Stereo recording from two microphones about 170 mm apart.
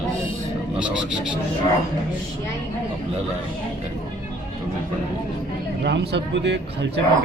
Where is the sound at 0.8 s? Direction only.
5° right (ahead or behind).